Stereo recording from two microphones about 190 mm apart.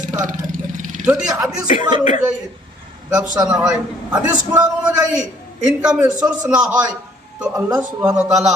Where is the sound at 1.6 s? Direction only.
40° left (ahead or behind).